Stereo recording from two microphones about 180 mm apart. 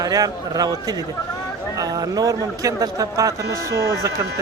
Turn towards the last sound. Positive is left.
turn(degrees=-20)  # may be behind; listen again after turning